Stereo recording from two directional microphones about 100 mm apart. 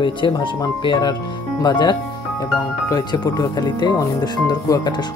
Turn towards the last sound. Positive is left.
turn(degrees=45)  # may be behind; listen again after turning